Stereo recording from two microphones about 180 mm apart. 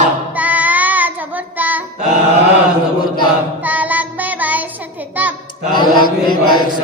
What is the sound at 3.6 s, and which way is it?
Child singing, 10° right (ahead or behind).